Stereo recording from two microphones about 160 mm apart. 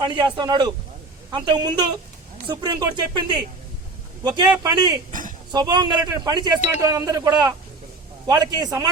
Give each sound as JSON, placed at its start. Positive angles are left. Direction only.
{"t": 0.0, "sound": "a man's voice", "side_deg": -30}